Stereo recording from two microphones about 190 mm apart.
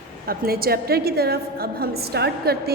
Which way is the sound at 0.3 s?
50° right (ahead or behind).